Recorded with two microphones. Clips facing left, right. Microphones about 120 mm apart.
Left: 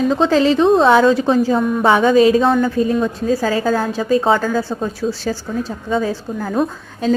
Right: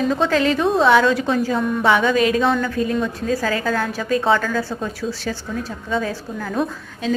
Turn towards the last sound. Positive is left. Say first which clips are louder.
# left 5 dB
turn(degrees=45)  # may be behind; listen again after turning